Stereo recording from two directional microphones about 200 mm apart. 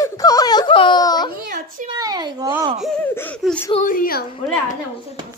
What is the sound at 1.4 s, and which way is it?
Speech, 40° right (ahead or behind).